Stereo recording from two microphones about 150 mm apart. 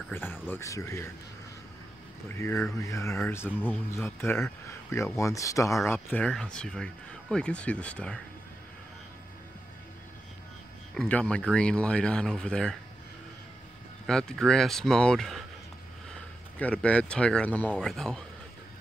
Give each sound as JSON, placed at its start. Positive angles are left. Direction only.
{"t": 0.1, "sound": "speech", "side_deg": 15}
{"t": 2.2, "sound": "speech", "side_deg": 15}
{"t": 11.0, "sound": "speech", "side_deg": 5}
{"t": 14.0, "sound": "speech", "side_deg": 5}
{"t": 16.5, "sound": "speech", "side_deg": 10}